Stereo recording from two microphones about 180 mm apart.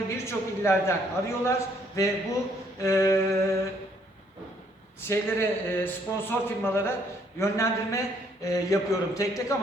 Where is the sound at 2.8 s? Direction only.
15° left (ahead or behind).